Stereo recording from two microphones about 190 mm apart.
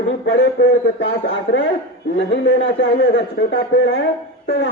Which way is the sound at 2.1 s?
70° left (ahead or behind).